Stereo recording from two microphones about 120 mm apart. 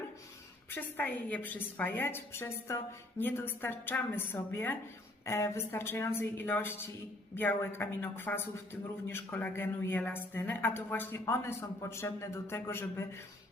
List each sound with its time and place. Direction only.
0.7 s a woman's voice: 15° left (ahead or behind)